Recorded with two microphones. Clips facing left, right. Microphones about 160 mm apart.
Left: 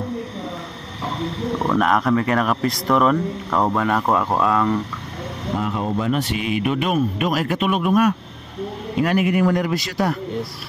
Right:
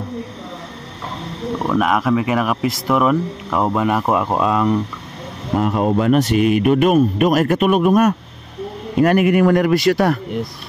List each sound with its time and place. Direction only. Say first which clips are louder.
1.6 s speech: right 2 dB; 5° right (ahead or behind)
5.6 s speech: right 7 dB; 55° right (ahead or behind)
6.1 s speech: right 8 dB; 45° right (ahead or behind); by 10.1 s 65° right (ahead or behind)